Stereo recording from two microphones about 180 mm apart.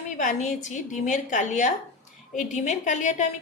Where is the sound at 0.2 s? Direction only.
45° left (ahead or behind).